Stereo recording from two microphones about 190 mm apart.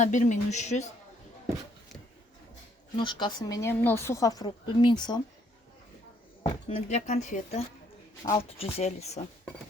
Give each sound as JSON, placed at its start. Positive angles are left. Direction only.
{"t": 0.0, "sound": "speech", "side_deg": 40}
{"t": 2.9, "sound": "speech", "side_deg": 25}
{"t": 6.4, "sound": "speech", "side_deg": 30}